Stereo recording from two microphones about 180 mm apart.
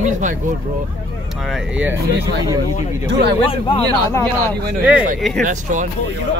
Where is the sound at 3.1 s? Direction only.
70° right (ahead or behind).